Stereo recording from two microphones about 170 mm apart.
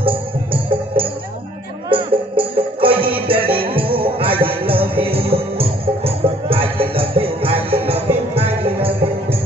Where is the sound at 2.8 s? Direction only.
30° right (ahead or behind).